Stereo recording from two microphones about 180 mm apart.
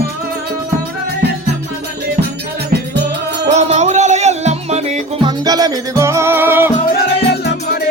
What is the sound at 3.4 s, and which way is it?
Music, 40° right (ahead or behind).